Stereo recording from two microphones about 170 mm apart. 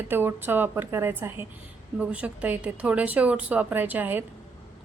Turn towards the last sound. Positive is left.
turn(degrees=-10)  # may be behind; listen again after turning